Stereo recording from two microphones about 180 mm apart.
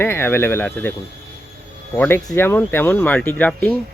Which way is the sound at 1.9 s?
15° left (ahead or behind).